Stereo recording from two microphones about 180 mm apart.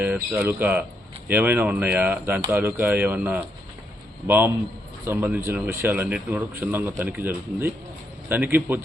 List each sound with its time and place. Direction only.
0.0 s a man's voice: 10° right (ahead or behind)